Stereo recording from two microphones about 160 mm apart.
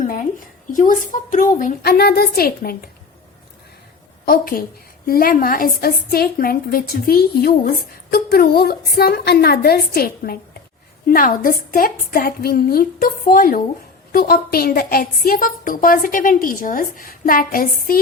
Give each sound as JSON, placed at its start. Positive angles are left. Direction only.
{"t": 0.0, "sound": "a sound", "side_deg": 60}
{"t": 0.8, "sound": "a woman's voice", "side_deg": 55}
{"t": 4.3, "sound": "a woman's voice", "side_deg": 65}